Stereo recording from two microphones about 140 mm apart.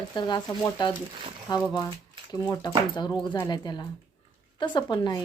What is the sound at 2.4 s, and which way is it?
Speech, 20° left (ahead or behind).